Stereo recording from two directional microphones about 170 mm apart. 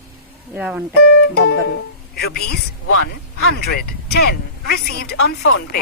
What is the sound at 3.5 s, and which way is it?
Speech, 65° left (ahead or behind).